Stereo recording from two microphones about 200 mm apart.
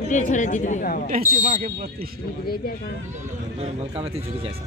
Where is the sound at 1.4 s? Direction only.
35° right (ahead or behind).